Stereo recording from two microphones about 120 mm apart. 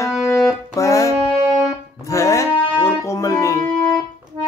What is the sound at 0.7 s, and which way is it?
Music, 25° left (ahead or behind).